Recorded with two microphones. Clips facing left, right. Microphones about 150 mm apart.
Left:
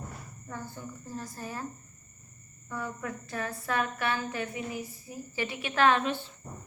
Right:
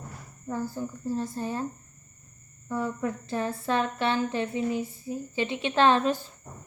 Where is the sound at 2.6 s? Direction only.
30° right (ahead or behind).